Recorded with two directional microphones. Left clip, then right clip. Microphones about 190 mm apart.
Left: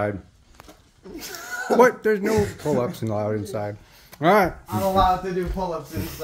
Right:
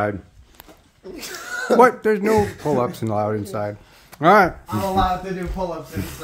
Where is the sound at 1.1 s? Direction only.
35° right (ahead or behind).